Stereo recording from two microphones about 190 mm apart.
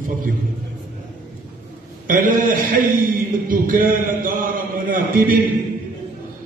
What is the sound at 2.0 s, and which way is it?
A man's voice, 45° right (ahead or behind).